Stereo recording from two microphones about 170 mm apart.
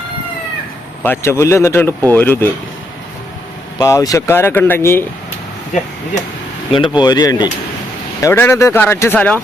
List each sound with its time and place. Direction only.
1.0 s speech: 15° left (ahead or behind)
3.8 s speech: 20° left (ahead or behind)
6.7 s speech: 30° left (ahead or behind); by 9.4 s 10° left (ahead or behind)